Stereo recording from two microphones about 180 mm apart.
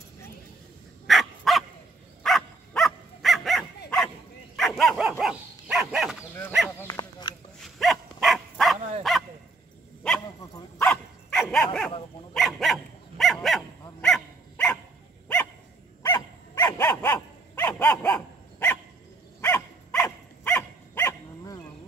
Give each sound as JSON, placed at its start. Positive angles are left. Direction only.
{"t": 1.0, "sound": "dog", "side_deg": 0}
{"t": 6.8, "sound": "dog", "side_deg": 20}
{"t": 7.6, "sound": "dog", "side_deg": 0}
{"t": 10.8, "sound": "dog", "side_deg": 5}
{"t": 16.0, "sound": "dog", "side_deg": 20}